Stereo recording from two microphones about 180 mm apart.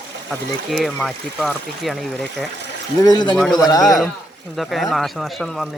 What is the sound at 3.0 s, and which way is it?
Speech, 20° left (ahead or behind).